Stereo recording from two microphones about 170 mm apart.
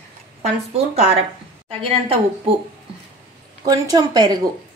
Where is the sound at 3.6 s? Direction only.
25° right (ahead or behind).